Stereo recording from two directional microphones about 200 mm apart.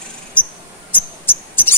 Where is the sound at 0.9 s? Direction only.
10° left (ahead or behind).